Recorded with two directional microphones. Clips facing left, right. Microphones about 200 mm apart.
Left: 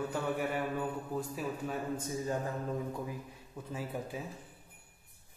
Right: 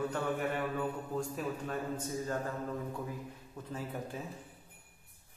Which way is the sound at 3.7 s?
10° left (ahead or behind).